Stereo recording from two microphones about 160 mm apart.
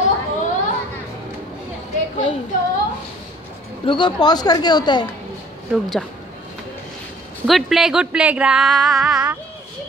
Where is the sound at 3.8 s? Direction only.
30° left (ahead or behind).